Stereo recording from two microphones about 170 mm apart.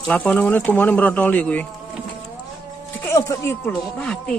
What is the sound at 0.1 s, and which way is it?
Speech, 10° left (ahead or behind).